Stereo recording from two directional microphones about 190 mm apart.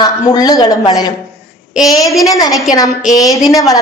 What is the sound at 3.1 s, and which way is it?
Speech, 20° left (ahead or behind).